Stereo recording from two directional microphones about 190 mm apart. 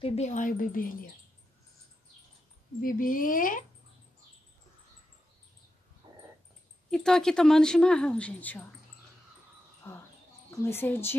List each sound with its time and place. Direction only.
0.0 s speech: 35° left (ahead or behind)
2.8 s speech: 45° left (ahead or behind)
6.0 s a sound: 25° right (ahead or behind)
6.9 s speech: 5° left (ahead or behind)
9.8 s speech: 10° left (ahead or behind)